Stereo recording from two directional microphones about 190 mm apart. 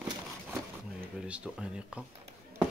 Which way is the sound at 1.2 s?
5° right (ahead or behind).